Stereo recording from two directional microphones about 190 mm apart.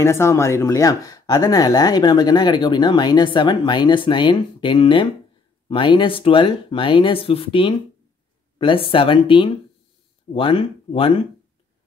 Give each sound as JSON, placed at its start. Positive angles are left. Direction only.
{"t": 0.0, "sound": "speech", "side_deg": 15}